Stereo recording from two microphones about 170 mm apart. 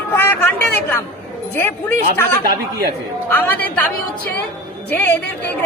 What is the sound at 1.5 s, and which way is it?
Speech, 15° left (ahead or behind).